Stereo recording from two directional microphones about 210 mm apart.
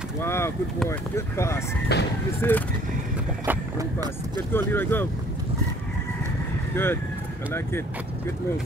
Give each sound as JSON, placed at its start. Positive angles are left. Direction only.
{"t": 0.2, "sound": "speech", "side_deg": 10}
{"t": 1.9, "sound": "speech", "side_deg": 50}
{"t": 2.4, "sound": "speech", "side_deg": 10}
{"t": 3.4, "sound": "speech", "side_deg": -15}
{"t": 4.5, "sound": "speech", "side_deg": 10}
{"t": 6.7, "sound": "speech", "side_deg": 10}